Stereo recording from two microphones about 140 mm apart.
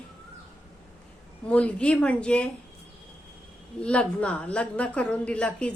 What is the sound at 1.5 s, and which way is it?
A woman's voice, 10° left (ahead or behind).